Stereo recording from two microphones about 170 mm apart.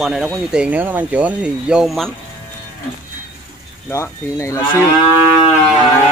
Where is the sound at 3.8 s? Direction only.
15° left (ahead or behind).